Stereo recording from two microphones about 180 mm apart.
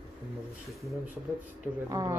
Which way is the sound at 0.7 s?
Centre (ahead or behind).